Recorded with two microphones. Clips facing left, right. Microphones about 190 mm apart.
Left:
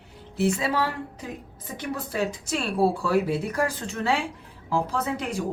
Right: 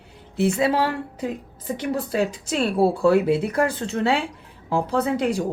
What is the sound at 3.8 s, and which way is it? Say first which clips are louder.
Speech: right 4 dB; 25° right (ahead or behind).